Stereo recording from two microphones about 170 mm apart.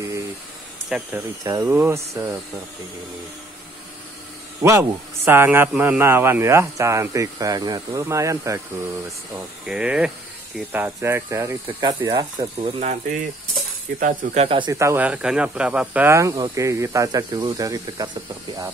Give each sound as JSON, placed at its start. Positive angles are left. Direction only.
{"t": 0.8, "sound": "speech", "side_deg": -5}
{"t": 1.4, "sound": "speech", "side_deg": -20}
{"t": 4.6, "sound": "speech", "side_deg": -15}
{"t": 9.7, "sound": "speech", "side_deg": -5}
{"t": 12.6, "sound": "speech", "side_deg": -40}
{"t": 13.9, "sound": "speech", "side_deg": -55}
{"t": 14.4, "sound": "speech", "side_deg": -30}
{"t": 14.7, "sound": "speech", "side_deg": -15}